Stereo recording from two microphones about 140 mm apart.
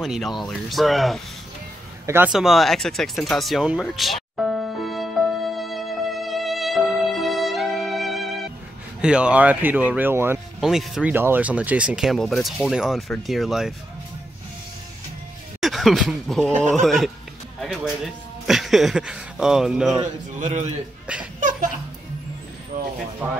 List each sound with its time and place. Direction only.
0.0 s speech: centre (ahead or behind)
2.0 s speech: 15° right (ahead or behind)
2.3 s speech: centre (ahead or behind)
3.9 s music: centre (ahead or behind)
9.0 s speech: 10° right (ahead or behind)
10.6 s speech: 5° right (ahead or behind)
15.6 s speech: centre (ahead or behind)
20.3 s a man's voice: 55° right (ahead or behind)
21.4 s a sound: 70° right (ahead or behind)
22.7 s vehicle: 75° right (ahead or behind)